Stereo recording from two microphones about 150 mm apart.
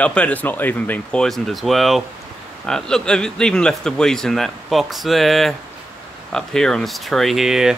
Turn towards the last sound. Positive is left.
turn(degrees=0)  # may be behind; listen again after turning